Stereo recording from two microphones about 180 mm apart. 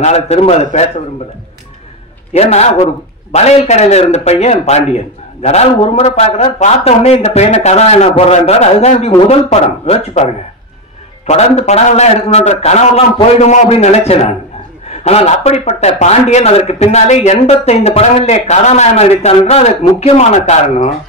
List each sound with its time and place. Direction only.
0.0 s a man's voice: 35° left (ahead or behind)
2.3 s a man's voice: 35° left (ahead or behind)